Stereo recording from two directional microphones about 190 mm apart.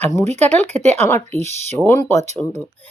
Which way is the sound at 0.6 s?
35° right (ahead or behind).